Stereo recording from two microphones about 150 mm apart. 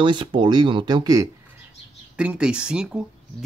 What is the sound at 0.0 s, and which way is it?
Speech, 30° right (ahead or behind).